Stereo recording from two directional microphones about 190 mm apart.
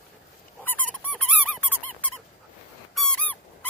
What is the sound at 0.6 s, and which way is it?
Squeak, 10° left (ahead or behind).